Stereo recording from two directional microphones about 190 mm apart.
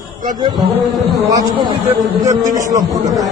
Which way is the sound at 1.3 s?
25° right (ahead or behind).